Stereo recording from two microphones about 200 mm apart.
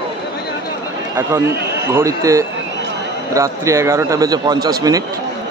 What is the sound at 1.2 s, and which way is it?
A man's voice, 15° right (ahead or behind).